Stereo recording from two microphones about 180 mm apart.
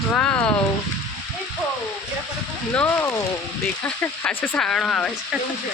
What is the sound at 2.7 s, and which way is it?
Speech, 10° left (ahead or behind).